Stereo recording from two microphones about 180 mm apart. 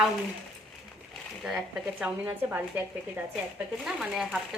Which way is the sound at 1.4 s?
5° right (ahead or behind).